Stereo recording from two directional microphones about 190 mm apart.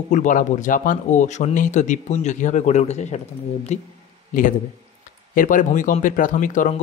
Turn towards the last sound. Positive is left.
turn(degrees=45)  # may be behind; listen again after turning